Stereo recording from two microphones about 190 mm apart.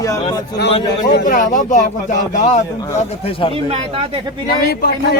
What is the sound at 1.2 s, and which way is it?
Speech, 45° left (ahead or behind).